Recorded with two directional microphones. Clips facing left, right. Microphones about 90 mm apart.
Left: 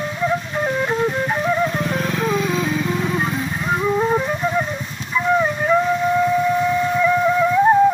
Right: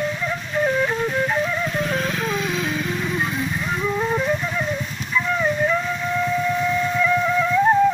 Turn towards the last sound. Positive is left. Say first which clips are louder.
# left 3 dB
turn(degrees=25)  # may be behind; listen again after turning